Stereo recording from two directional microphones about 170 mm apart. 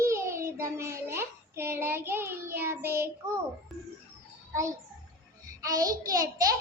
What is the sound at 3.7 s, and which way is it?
Music, centre (ahead or behind).